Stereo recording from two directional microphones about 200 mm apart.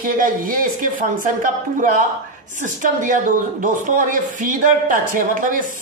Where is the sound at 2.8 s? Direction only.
40° right (ahead or behind).